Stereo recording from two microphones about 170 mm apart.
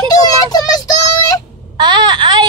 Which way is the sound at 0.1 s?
20° left (ahead or behind).